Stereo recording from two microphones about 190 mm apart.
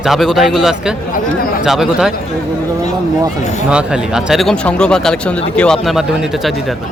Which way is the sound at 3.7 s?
5° right (ahead or behind).